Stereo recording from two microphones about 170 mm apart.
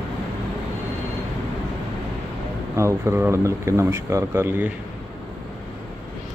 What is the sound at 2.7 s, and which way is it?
Speech, 15° right (ahead or behind).